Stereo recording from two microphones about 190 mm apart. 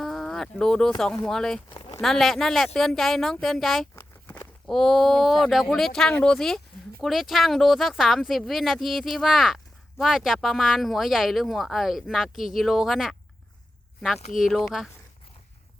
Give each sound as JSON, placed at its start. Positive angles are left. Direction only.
{"t": 0.0, "sound": "speech", "side_deg": 0}
{"t": 1.7, "sound": "a sound", "side_deg": 25}
{"t": 2.0, "sound": "speech", "side_deg": 0}
{"t": 3.9, "sound": "speech", "side_deg": 10}
{"t": 14.3, "sound": "speech", "side_deg": 0}